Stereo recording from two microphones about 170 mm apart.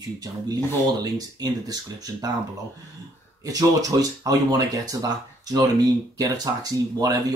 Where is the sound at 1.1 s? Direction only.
20° right (ahead or behind).